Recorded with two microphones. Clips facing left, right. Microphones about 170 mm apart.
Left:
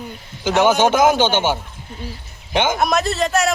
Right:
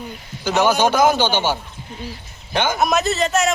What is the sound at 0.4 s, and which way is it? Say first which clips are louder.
Speech: left 2 dB; 20° left (ahead or behind).